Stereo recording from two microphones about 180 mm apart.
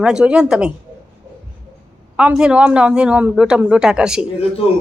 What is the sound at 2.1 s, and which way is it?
A woman's voice, 5° right (ahead or behind).